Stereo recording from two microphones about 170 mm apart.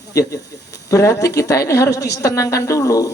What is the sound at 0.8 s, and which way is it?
Speech, 20° left (ahead or behind).